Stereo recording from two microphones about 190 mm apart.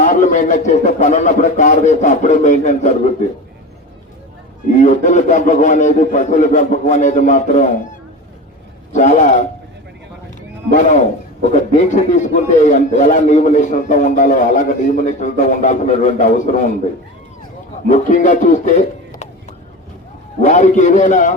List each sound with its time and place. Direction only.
0.0 s a man's voice: 40° left (ahead or behind)
4.7 s a man's voice: 40° left (ahead or behind)
8.9 s a man's voice: 40° left (ahead or behind)
10.7 s a man's voice: 40° left (ahead or behind)
17.8 s a man's voice: 40° left (ahead or behind)